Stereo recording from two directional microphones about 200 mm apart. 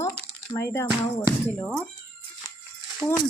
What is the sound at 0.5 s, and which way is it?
Speech, 10° left (ahead or behind).